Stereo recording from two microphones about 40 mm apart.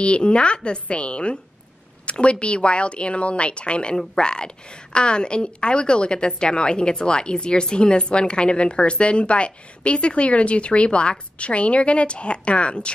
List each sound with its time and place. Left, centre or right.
0.0 s a woman's voice: left